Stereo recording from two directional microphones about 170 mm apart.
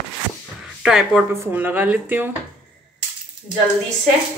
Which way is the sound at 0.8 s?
5° right (ahead or behind).